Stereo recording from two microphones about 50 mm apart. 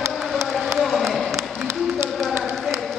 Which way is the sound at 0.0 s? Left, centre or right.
Right.